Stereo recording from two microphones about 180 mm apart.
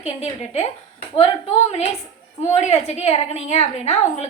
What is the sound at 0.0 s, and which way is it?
Speech, 35° left (ahead or behind).